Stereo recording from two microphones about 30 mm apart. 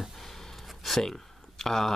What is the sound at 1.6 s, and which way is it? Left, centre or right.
Speech, centre.